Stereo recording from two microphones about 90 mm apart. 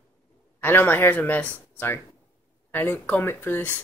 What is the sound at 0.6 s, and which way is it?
Speech, 25° left (ahead or behind).